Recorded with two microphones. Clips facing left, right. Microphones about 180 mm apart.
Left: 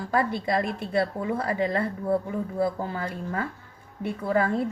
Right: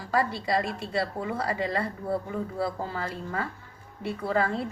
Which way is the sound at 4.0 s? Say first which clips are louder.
Left 2 dB; 50° left (ahead or behind).